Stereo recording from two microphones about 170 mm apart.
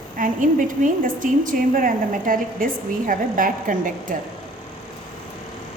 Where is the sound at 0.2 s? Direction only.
50° right (ahead or behind).